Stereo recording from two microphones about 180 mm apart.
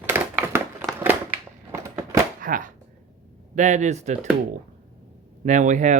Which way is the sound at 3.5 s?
40° right (ahead or behind).